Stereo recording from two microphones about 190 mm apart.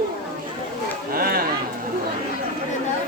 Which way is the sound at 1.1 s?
50° right (ahead or behind).